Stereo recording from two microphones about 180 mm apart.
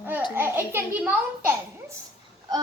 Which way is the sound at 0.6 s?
10° right (ahead or behind).